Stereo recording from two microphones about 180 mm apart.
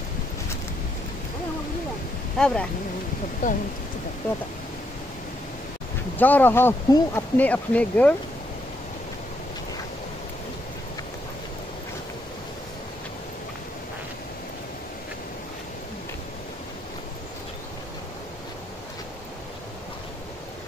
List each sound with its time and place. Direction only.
2.3 s speech: 5° left (ahead or behind)
3.4 s speech: 45° left (ahead or behind)
6.1 s speech: 10° left (ahead or behind)